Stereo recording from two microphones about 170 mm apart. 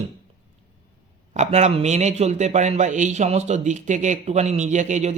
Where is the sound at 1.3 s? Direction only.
40° right (ahead or behind).